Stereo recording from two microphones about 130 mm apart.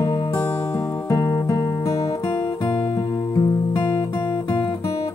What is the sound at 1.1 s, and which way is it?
Music, 25° left (ahead or behind).